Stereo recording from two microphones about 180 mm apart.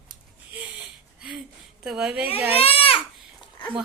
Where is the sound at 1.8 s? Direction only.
5° right (ahead or behind).